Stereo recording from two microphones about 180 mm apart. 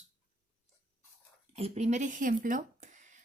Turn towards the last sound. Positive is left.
turn(degrees=-45)  # may be behind; listen again after turning